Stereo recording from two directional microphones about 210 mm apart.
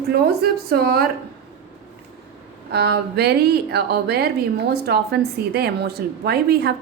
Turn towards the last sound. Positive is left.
turn(degrees=-50)  # may be behind; listen again after turning